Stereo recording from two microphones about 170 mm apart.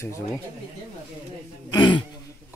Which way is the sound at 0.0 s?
15° left (ahead or behind).